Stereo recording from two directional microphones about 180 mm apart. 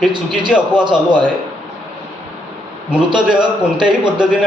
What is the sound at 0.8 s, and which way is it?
Speech, 25° right (ahead or behind).